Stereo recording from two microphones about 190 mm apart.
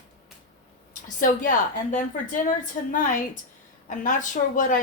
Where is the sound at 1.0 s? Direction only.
45° left (ahead or behind).